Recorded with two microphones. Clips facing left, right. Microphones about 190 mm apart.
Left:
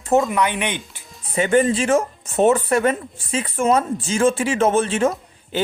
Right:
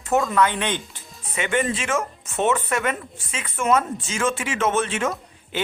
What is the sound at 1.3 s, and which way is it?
Speech, 35° left (ahead or behind).